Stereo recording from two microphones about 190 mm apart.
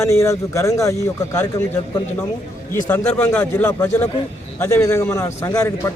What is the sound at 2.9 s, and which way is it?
A man's voice, 10° left (ahead or behind).